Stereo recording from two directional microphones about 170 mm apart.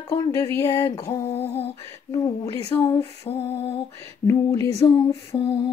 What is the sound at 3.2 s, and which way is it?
Lullaby, 35° left (ahead or behind).